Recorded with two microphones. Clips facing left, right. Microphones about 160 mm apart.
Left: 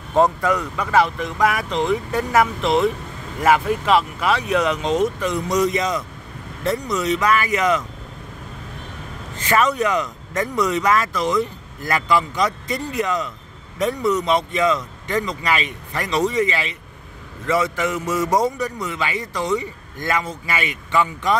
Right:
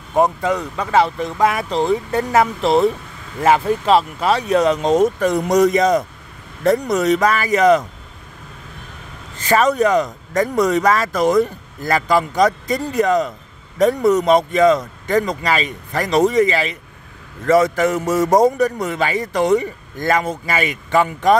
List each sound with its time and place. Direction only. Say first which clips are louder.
0.4 s speech: right 1 dB; 25° right (ahead or behind)
9.5 s a man's voice: right 4 dB; 40° right (ahead or behind); by 19.7 s 55° right (ahead or behind)
20.0 s a man's voice: right 5 dB; 40° right (ahead or behind)